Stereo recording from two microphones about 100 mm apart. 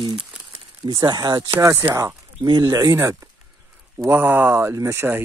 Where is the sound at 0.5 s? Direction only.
55° right (ahead or behind).